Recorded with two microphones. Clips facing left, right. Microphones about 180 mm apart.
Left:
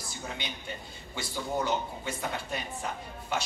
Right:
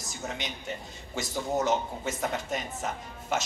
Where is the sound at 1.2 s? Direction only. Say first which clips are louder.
Right 3 dB; 45° right (ahead or behind).